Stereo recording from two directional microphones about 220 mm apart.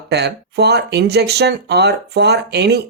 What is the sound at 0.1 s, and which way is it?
Speech, 50° right (ahead or behind).